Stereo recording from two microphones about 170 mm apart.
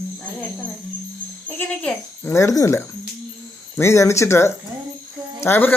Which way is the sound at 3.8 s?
15° left (ahead or behind).